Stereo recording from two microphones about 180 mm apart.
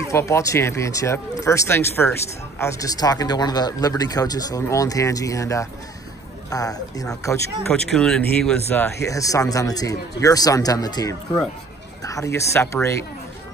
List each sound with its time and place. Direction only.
0.1 s speech: 15° left (ahead or behind)
7.7 s speech: 5° left (ahead or behind)